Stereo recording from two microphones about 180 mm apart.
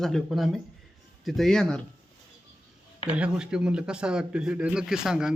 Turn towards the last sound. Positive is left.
turn(degrees=-5)  # may be behind; listen again after turning